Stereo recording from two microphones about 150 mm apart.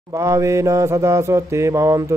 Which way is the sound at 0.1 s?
20° right (ahead or behind).